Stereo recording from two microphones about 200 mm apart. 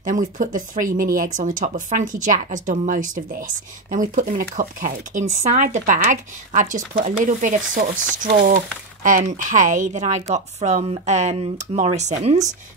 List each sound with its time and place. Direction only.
0.0 s speech: 40° right (ahead or behind)